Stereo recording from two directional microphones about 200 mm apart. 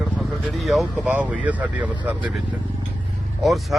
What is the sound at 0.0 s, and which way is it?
Speech, centre (ahead or behind).